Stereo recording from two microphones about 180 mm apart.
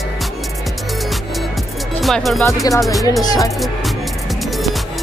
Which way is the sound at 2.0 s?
Centre (ahead or behind).